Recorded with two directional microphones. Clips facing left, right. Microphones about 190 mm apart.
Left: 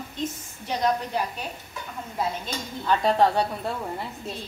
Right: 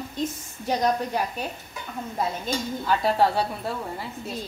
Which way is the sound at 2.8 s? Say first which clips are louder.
Left 2 dB; 5° right (ahead or behind).